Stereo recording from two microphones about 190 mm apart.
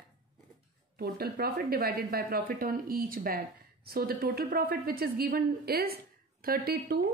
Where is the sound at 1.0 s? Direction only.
55° right (ahead or behind).